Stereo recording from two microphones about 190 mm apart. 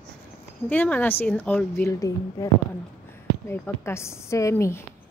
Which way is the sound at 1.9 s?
15° left (ahead or behind).